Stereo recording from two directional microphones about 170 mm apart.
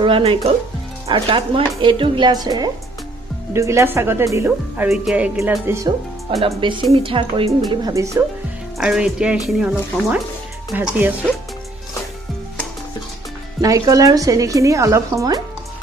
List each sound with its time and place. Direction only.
0.0 s a woman's voice: 30° right (ahead or behind); by 5.6 s 5° right (ahead or behind)
5.7 s speech: 15° right (ahead or behind)
6.3 s a woman's voice: 30° right (ahead or behind)
7.7 s speech: 20° right (ahead or behind)
8.7 s speech: 5° right (ahead or behind)
13.6 s speech: 20° right (ahead or behind)